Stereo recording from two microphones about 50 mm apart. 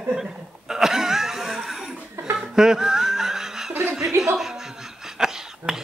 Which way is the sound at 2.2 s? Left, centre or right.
Centre.